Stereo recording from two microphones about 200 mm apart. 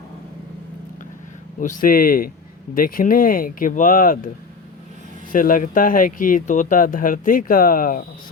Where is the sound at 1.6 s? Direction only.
40° left (ahead or behind).